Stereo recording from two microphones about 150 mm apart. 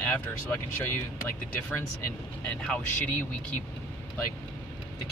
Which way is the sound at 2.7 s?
5° left (ahead or behind).